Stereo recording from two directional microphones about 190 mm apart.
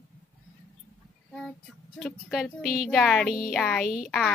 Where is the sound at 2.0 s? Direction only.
5° left (ahead or behind).